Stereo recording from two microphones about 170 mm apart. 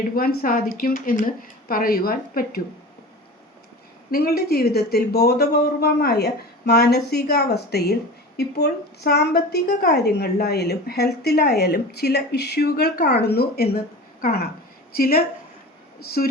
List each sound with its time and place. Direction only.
0.2 s speech: 60° left (ahead or behind)
4.1 s a woman's voice: 65° left (ahead or behind)